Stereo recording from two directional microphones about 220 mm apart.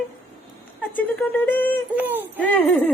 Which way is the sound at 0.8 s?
5° left (ahead or behind).